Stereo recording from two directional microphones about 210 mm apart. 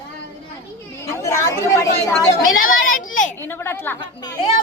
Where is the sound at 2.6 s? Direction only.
40° left (ahead or behind).